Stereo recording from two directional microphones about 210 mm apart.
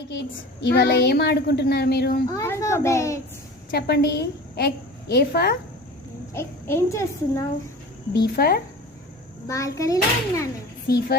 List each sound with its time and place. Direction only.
0.1 s a woman's voice: 55° left (ahead or behind)
2.2 s a child's voice: 15° left (ahead or behind)
3.7 s a woman's voice: 50° left (ahead or behind)
6.3 s a child's voice: 10° left (ahead or behind)
8.1 s a woman's voice: 50° left (ahead or behind)
9.5 s a child's voice: 15° left (ahead or behind)
10.9 s a woman's voice: 50° left (ahead or behind)